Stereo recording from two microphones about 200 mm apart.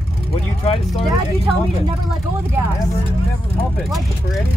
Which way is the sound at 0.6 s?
30° left (ahead or behind).